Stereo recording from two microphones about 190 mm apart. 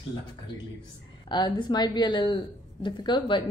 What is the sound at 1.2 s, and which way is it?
Speech, 25° left (ahead or behind).